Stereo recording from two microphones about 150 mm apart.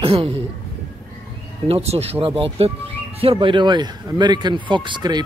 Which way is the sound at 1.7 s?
45° right (ahead or behind).